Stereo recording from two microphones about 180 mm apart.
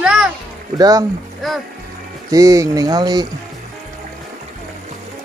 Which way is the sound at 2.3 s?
20° right (ahead or behind).